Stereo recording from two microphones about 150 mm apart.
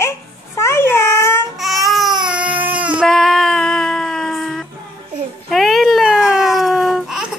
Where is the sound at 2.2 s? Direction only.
10° right (ahead or behind).